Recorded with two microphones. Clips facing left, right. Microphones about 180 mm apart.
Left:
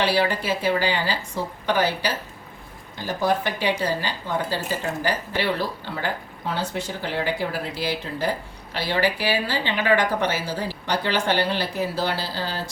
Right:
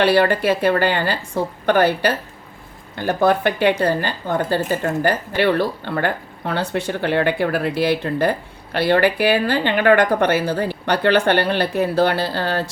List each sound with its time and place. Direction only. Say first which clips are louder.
0.0 s a woman's voice: right 7 dB; 60° right (ahead or behind)